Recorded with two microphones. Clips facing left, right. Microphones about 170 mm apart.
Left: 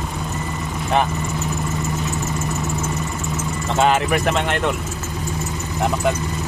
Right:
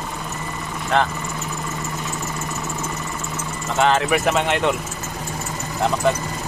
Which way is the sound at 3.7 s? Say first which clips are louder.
Left 1 dB; 20° left (ahead or behind).